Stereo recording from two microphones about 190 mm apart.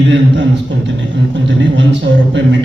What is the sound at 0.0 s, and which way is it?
Speech, 70° right (ahead or behind).